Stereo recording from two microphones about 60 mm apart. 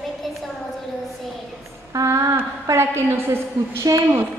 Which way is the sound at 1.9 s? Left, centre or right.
Right.